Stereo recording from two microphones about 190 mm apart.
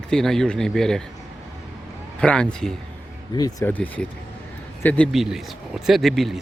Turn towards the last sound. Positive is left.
turn(degrees=0)  # may be behind; listen again after turning